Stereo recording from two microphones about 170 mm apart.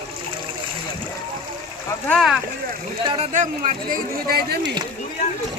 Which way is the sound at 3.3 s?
50° right (ahead or behind).